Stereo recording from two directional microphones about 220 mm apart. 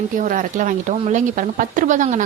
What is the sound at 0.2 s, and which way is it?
A woman's voice, 35° right (ahead or behind).